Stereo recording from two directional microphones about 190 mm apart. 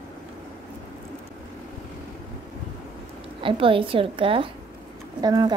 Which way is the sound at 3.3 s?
30° right (ahead or behind).